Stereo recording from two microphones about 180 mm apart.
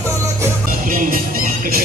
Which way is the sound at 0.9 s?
50° right (ahead or behind).